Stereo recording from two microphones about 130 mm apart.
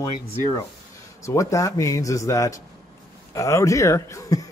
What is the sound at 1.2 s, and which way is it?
A man's voice, 25° left (ahead or behind).